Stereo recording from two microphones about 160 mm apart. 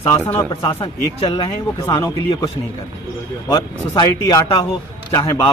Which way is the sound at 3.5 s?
25° left (ahead or behind).